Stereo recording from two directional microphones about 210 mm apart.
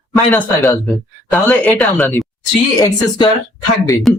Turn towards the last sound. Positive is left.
turn(degrees=0)  # may be behind; listen again after turning